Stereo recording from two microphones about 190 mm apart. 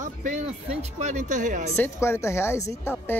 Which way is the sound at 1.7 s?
10° left (ahead or behind).